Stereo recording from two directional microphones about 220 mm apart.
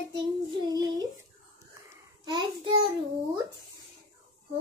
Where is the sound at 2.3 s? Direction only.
20° right (ahead or behind).